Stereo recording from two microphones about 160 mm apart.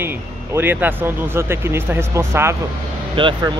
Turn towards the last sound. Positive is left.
turn(degrees=-30)  # may be behind; listen again after turning